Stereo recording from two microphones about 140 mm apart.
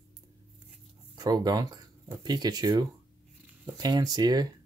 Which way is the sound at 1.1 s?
30° right (ahead or behind).